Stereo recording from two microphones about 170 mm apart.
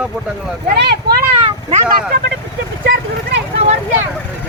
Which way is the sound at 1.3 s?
30° right (ahead or behind).